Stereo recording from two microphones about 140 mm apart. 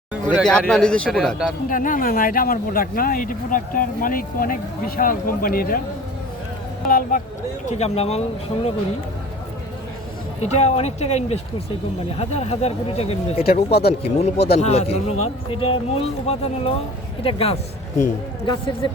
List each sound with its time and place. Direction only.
0.4 s a man's voice: 5° left (ahead or behind)
1.7 s speech: 75° left (ahead or behind); by 5.8 s 90° left
6.8 s speech: 90° left
7.7 s speech: 50° left (ahead or behind)
10.4 s speech: 50° left (ahead or behind)